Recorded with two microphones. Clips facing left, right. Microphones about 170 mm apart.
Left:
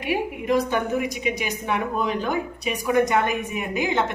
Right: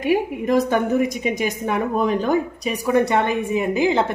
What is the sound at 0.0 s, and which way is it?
A woman's voice, 45° right (ahead or behind).